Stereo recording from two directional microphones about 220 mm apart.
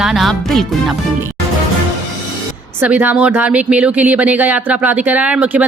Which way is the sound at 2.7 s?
5° right (ahead or behind).